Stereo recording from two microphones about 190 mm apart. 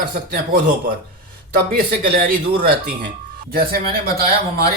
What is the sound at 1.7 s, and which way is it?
Speech, 50° right (ahead or behind).